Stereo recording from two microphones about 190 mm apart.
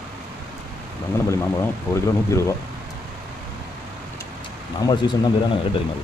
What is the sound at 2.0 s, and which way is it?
Speech, 15° left (ahead or behind).